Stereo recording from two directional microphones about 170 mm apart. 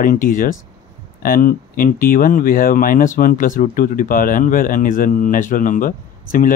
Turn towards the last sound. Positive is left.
turn(degrees=55)  # may be behind; listen again after turning